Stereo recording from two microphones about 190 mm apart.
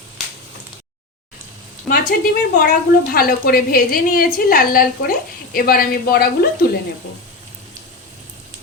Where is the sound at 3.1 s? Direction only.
50° left (ahead or behind).